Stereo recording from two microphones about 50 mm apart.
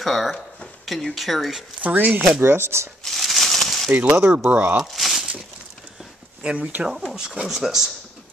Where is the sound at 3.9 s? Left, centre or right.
Right.